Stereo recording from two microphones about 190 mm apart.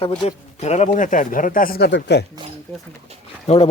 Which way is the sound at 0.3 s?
35° left (ahead or behind).